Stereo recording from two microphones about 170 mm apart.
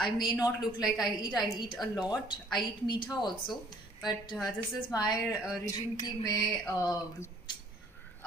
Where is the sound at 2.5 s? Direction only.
25° left (ahead or behind).